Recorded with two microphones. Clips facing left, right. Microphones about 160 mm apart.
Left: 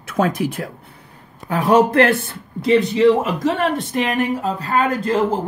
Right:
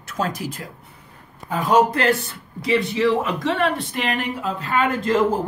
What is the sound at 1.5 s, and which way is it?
Speech, 70° left (ahead or behind).